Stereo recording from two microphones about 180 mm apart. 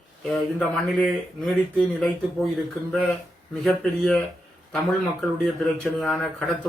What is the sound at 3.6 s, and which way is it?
Speech, centre (ahead or behind).